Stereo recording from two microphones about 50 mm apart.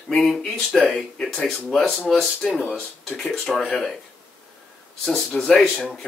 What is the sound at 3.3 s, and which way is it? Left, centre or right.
Speech, centre.